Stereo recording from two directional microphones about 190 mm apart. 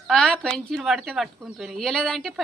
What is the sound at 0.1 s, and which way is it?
Speech, 5° left (ahead or behind).